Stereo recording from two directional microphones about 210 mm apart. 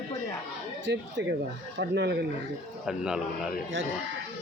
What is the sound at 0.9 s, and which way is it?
Speech, 55° right (ahead or behind).